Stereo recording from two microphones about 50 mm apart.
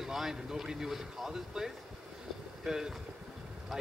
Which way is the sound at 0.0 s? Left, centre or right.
Centre.